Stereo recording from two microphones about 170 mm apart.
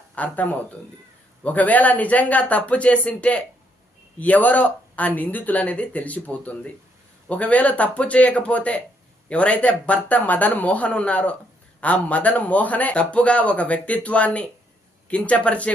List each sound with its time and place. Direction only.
0.2 s a man's voice: 10° left (ahead or behind)